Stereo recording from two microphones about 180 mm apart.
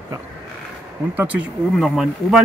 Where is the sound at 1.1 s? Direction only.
10° right (ahead or behind).